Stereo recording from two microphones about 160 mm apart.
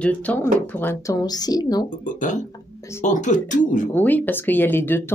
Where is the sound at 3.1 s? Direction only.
50° left (ahead or behind).